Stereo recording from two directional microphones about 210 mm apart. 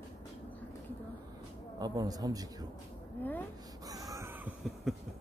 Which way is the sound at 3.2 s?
10° left (ahead or behind).